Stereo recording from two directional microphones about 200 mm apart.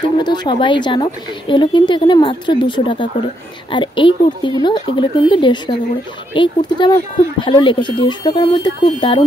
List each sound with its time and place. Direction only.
0.2 s speech: 20° left (ahead or behind)